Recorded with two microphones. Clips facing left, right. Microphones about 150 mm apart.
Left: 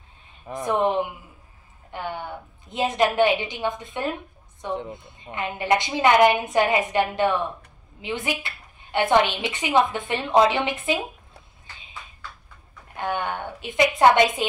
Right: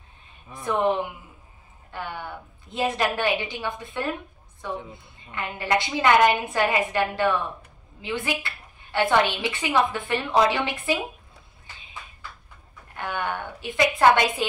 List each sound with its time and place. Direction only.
0.7 s a woman's voice: 20° left (ahead or behind)
4.7 s speech: 65° left (ahead or behind)
5.3 s a woman's voice: 20° left (ahead or behind)
12.9 s a woman's voice: 20° left (ahead or behind)